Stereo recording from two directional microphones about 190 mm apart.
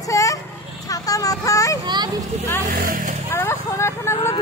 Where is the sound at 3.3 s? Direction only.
10° left (ahead or behind).